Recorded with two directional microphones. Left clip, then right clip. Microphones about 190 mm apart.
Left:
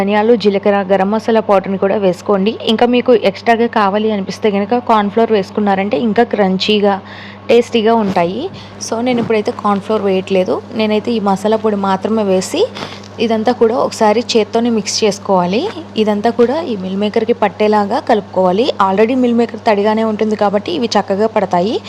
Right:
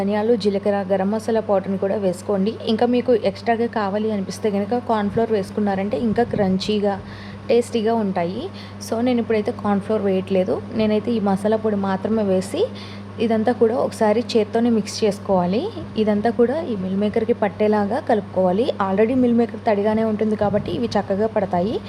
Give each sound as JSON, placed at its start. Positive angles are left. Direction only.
{"t": 0.0, "sound": "a woman's voice", "side_deg": 5}
{"t": 8.1, "sound": "a woman's voice", "side_deg": 20}